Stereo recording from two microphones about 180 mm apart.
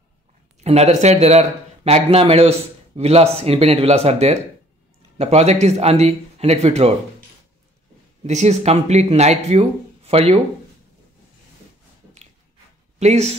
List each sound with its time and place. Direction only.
0.7 s speech: 35° right (ahead or behind)
8.2 s speech: 40° right (ahead or behind)
13.0 s speech: 40° right (ahead or behind)